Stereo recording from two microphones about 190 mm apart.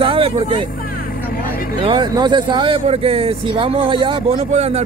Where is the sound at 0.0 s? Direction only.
30° right (ahead or behind).